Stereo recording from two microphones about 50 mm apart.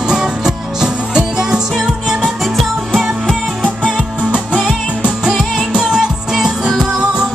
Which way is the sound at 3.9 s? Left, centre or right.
Centre.